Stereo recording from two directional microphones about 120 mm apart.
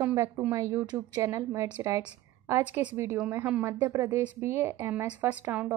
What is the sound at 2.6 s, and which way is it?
A woman's voice, 10° right (ahead or behind).